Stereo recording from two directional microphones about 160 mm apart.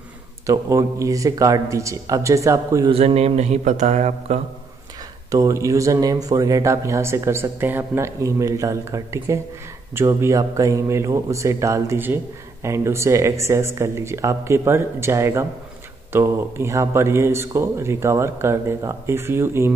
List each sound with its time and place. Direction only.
0.5 s speech: 20° right (ahead or behind)
2.9 s speech: 40° right (ahead or behind)
5.3 s speech: 20° right (ahead or behind)